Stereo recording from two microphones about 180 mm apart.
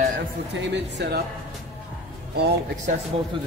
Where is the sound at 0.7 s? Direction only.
65° right (ahead or behind).